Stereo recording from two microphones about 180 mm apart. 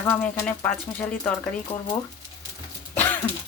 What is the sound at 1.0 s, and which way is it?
Speech, 15° left (ahead or behind).